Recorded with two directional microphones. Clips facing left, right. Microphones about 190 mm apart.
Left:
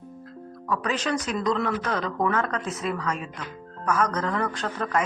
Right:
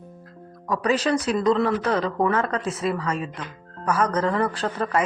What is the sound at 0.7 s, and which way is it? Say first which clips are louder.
Speech: right 5 dB; 35° right (ahead or behind).